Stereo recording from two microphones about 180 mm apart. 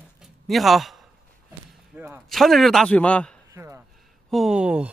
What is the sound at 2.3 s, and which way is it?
Speech, centre (ahead or behind).